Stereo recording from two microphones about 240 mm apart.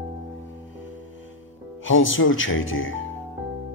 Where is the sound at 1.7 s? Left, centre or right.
Left.